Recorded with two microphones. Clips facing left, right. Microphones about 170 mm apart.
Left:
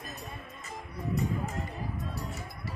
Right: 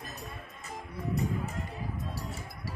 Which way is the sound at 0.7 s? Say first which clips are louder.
Even; centre (ahead or behind).